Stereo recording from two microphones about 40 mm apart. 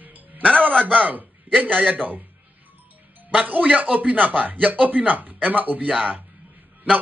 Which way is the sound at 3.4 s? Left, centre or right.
Right.